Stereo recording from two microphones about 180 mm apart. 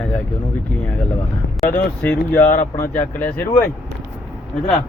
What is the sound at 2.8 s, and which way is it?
Speech, 10° left (ahead or behind).